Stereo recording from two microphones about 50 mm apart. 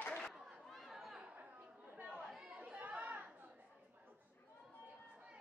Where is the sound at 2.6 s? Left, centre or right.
Right.